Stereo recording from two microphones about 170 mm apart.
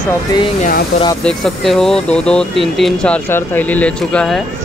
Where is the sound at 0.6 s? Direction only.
55° left (ahead or behind).